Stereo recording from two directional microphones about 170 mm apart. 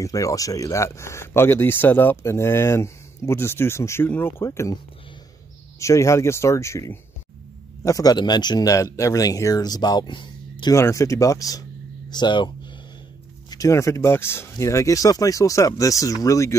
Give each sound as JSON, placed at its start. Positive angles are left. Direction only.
{"t": 0.0, "sound": "speech", "side_deg": 20}
{"t": 5.8, "sound": "speech", "side_deg": 15}
{"t": 13.5, "sound": "speech", "side_deg": 20}